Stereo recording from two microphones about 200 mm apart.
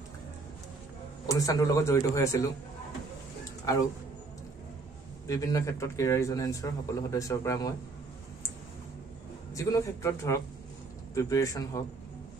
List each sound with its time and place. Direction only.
1.2 s a man's voice: 15° left (ahead or behind)
5.2 s a man's voice: 15° left (ahead or behind)
9.5 s a man's voice: 15° left (ahead or behind)